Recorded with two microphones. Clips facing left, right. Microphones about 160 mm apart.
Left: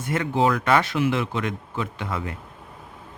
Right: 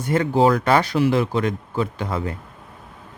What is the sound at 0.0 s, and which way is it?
Speech, 35° right (ahead or behind).